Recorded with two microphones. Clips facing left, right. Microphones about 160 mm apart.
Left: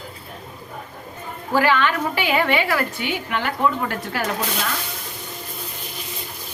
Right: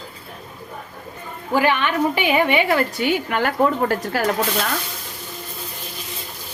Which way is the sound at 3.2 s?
45° right (ahead or behind).